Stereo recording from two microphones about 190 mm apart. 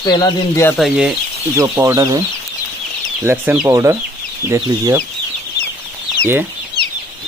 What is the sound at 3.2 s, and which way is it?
Speech, 10° right (ahead or behind).